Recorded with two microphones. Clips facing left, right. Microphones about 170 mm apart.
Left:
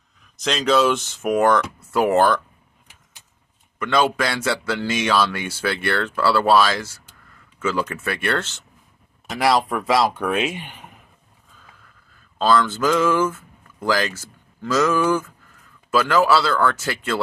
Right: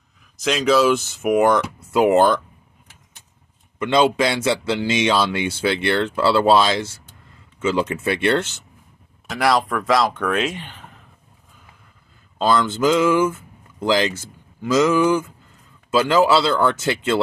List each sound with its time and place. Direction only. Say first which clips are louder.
0.4 s speech: right 2 dB; 5° right (ahead or behind)
3.8 s speech: right 3 dB; 20° right (ahead or behind)
9.3 s speech: even; centre (ahead or behind)
12.4 s speech: even; 15° right (ahead or behind)